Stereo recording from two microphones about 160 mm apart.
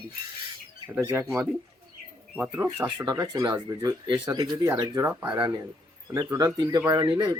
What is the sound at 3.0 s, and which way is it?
Speech, 20° right (ahead or behind).